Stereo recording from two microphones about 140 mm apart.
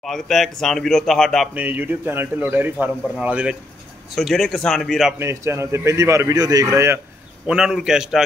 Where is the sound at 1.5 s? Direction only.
10° right (ahead or behind).